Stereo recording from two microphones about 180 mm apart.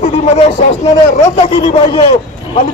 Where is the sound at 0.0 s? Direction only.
40° left (ahead or behind).